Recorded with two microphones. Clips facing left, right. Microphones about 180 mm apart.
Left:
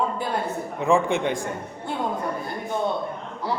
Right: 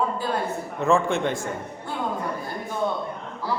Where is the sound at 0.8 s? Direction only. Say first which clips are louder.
Even; 15° left (ahead or behind).